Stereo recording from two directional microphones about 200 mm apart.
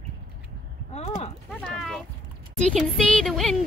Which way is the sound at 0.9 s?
35° left (ahead or behind).